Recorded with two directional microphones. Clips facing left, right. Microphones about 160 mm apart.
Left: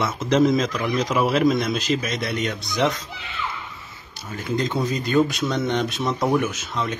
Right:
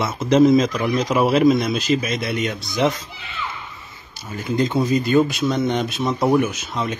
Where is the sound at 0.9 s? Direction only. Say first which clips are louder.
Right 3 dB; 10° right (ahead or behind).